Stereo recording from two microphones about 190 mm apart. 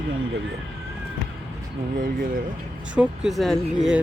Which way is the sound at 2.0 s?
45° right (ahead or behind).